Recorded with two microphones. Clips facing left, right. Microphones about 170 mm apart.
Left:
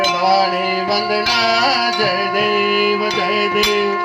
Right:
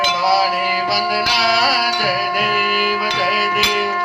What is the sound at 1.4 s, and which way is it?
Music, 45° left (ahead or behind).